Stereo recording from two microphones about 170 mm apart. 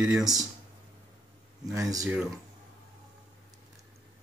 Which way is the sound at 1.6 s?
20° right (ahead or behind).